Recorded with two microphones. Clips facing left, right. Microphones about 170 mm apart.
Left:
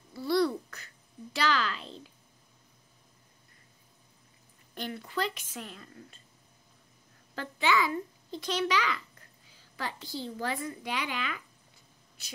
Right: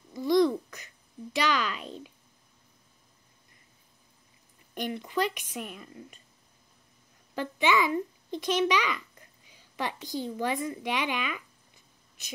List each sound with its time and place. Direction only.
0.1 s a sound: 15° right (ahead or behind)
4.7 s a woman's voice: 15° right (ahead or behind)
7.3 s a woman's voice: 20° right (ahead or behind)